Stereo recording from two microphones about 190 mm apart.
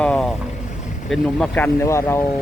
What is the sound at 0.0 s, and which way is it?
Vehicle, 5° left (ahead or behind).